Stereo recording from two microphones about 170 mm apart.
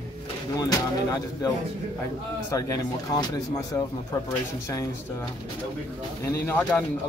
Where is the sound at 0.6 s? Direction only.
20° left (ahead or behind).